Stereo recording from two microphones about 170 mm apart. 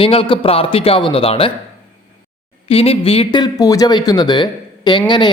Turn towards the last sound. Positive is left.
turn(degrees=25)  # may be behind; listen again after turning